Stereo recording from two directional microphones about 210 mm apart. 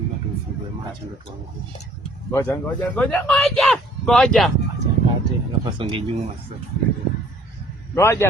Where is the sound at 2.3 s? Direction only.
10° left (ahead or behind).